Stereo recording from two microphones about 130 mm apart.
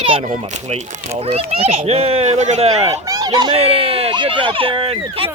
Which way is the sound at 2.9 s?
25° right (ahead or behind).